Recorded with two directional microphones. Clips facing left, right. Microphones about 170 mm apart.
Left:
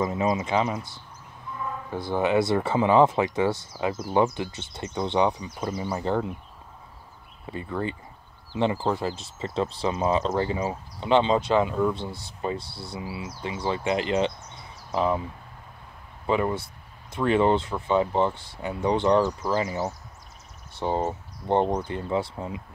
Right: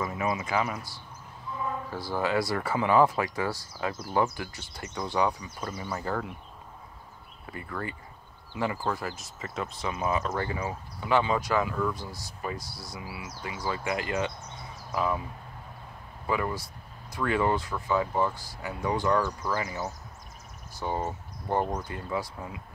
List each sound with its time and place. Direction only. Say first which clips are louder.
0.0 s speech: left 5 dB; 25° left (ahead or behind)
7.4 s speech: left 6 dB; 20° left (ahead or behind)
16.3 s speech: left 5 dB; 25° left (ahead or behind)